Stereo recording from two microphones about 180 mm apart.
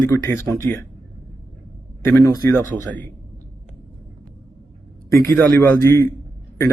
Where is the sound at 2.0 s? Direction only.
15° left (ahead or behind).